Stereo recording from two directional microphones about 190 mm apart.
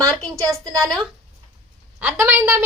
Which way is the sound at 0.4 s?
20° right (ahead or behind).